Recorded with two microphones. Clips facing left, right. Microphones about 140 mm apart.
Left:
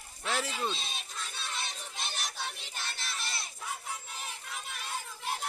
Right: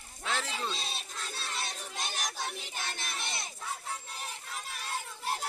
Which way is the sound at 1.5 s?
40° right (ahead or behind).